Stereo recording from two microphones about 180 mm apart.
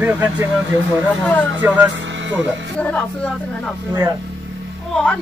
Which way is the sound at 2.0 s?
90° right.